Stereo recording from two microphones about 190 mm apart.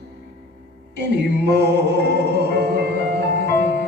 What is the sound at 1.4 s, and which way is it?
Music, 60° right (ahead or behind).